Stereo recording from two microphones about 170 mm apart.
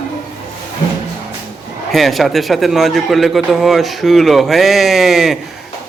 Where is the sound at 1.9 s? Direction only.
Centre (ahead or behind).